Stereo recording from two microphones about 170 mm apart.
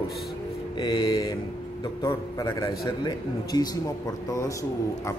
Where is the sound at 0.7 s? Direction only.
25° left (ahead or behind).